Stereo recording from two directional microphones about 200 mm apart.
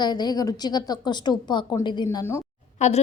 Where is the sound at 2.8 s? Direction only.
35° left (ahead or behind).